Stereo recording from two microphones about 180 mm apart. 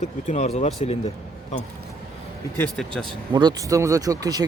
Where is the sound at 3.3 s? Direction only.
20° right (ahead or behind).